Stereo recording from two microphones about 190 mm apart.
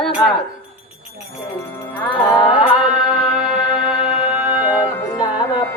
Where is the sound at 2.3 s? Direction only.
30° left (ahead or behind).